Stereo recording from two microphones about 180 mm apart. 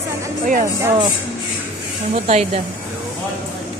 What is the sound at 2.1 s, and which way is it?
Speech, 40° right (ahead or behind).